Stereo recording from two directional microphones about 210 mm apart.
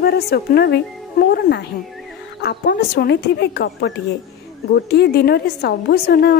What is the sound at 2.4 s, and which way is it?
A woman's voice, 50° left (ahead or behind).